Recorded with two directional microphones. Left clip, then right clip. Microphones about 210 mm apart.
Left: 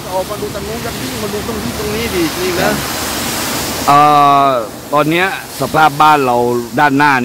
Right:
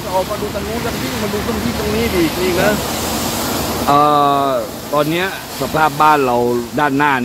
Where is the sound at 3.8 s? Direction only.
30° left (ahead or behind).